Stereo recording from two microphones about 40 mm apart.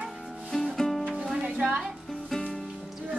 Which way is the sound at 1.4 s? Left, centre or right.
Right.